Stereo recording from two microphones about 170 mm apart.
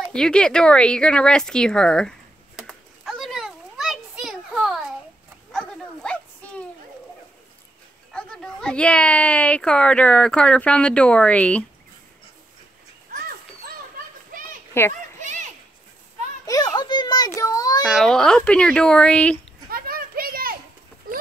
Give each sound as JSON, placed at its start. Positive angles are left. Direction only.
{"t": 0.1, "sound": "a sound", "side_deg": 5}
{"t": 8.1, "sound": "a woman's voice", "side_deg": 5}
{"t": 13.1, "sound": "a sound", "side_deg": -60}
{"t": 14.3, "sound": "children playing", "side_deg": -55}
{"t": 14.7, "sound": "a child's voice", "side_deg": 15}
{"t": 15.1, "sound": "children playing", "side_deg": -45}
{"t": 16.4, "sound": "children playing", "side_deg": 25}
{"t": 17.8, "sound": "speech", "side_deg": 0}
{"t": 19.7, "sound": "children playing", "side_deg": -60}